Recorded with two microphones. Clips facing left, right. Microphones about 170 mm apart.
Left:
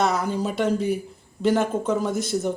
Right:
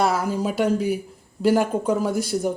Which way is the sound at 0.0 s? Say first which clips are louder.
Right 1 dB; 5° right (ahead or behind).